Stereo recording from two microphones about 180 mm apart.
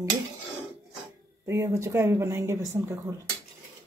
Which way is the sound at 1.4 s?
15° right (ahead or behind).